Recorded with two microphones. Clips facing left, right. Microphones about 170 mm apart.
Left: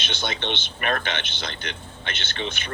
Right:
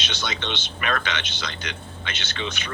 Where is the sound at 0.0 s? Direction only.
55° left (ahead or behind).